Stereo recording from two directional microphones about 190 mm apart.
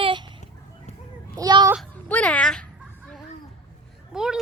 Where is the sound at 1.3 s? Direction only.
20° right (ahead or behind).